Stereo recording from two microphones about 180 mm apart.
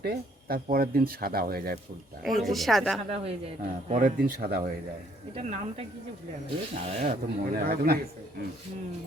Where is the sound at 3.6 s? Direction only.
45° right (ahead or behind).